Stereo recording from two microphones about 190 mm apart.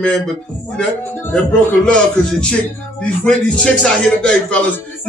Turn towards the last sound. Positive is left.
turn(degrees=5)  # may be behind; listen again after turning